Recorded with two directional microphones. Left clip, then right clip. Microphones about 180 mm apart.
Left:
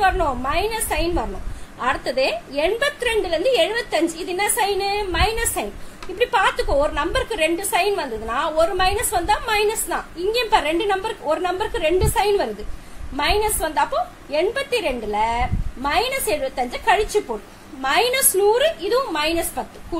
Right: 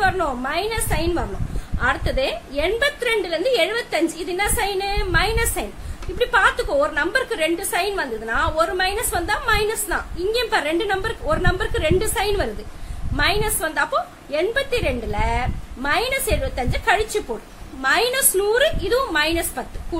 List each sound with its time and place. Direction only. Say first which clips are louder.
0.0 s a woman's voice: left 1 dB; 15° left (ahead or behind)